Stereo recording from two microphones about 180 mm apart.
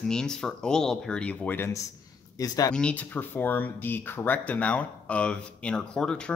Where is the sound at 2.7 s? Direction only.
5° left (ahead or behind).